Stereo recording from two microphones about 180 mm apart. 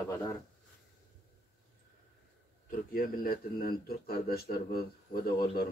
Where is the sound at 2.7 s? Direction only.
50° left (ahead or behind).